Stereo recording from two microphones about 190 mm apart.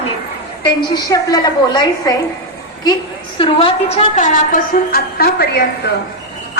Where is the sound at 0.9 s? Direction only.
20° left (ahead or behind).